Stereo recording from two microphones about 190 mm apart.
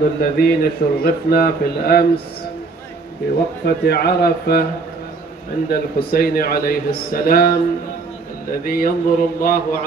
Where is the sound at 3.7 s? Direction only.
55° left (ahead or behind).